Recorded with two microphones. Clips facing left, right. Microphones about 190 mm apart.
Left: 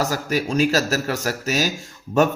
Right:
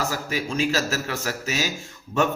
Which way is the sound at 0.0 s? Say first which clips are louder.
Left 5 dB; 40° left (ahead or behind).